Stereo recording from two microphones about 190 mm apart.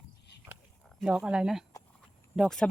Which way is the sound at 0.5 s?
10° right (ahead or behind).